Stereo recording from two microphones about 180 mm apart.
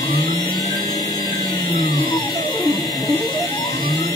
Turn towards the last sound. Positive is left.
turn(degrees=25)  # may be behind; listen again after turning